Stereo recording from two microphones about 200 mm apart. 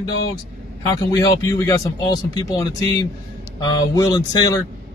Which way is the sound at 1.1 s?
20° left (ahead or behind).